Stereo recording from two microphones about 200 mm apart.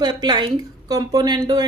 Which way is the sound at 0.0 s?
20° right (ahead or behind).